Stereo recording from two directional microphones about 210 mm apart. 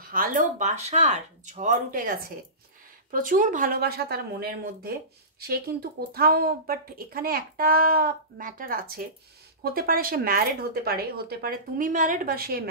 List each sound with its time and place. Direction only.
0.0 s speech: 40° right (ahead or behind)